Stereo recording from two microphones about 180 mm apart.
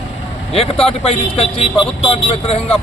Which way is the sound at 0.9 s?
35° left (ahead or behind).